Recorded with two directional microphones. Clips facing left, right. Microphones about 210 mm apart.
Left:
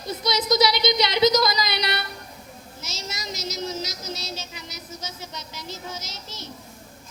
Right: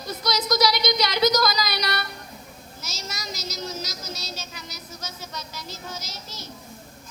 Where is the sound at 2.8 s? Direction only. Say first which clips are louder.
Left 1 dB; 25° left (ahead or behind).